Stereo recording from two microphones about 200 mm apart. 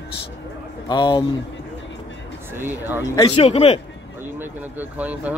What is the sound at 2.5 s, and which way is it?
Speech, 10° right (ahead or behind).